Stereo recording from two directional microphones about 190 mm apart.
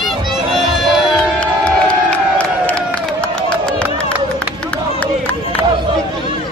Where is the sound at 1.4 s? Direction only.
5° left (ahead or behind).